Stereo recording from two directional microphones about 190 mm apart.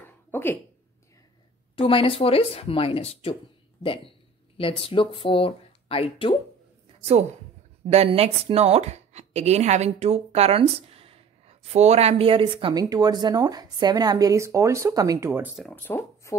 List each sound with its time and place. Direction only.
0.3 s a sound: 10° left (ahead or behind)
1.8 s speech: 30° left (ahead or behind)
7.0 s a woman's voice: 35° right (ahead or behind); by 15.5 s 10° right (ahead or behind)
15.5 s speech: 5° left (ahead or behind)